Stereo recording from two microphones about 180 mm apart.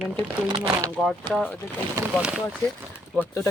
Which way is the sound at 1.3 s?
5° left (ahead or behind).